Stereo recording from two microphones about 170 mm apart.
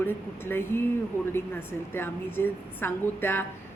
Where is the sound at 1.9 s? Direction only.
10° left (ahead or behind).